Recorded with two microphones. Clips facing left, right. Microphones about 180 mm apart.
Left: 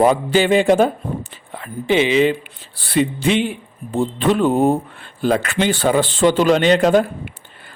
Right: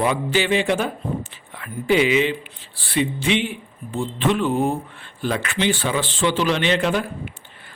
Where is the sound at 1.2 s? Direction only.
30° left (ahead or behind).